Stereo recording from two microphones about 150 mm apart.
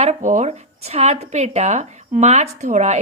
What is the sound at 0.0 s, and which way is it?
Speech, 50° right (ahead or behind).